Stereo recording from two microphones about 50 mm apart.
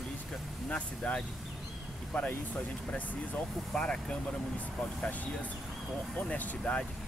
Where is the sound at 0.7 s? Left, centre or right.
Left.